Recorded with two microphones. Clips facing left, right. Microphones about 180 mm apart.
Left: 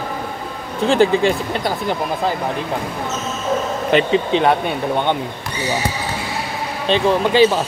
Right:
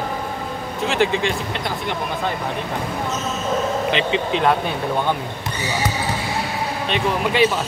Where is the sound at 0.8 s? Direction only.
35° left (ahead or behind).